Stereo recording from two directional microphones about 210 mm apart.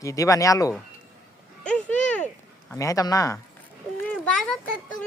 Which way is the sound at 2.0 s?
5° left (ahead or behind).